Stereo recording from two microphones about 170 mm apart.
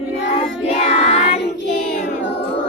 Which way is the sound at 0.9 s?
40° left (ahead or behind).